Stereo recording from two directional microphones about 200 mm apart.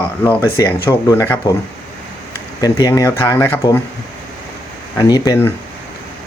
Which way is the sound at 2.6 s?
20° left (ahead or behind).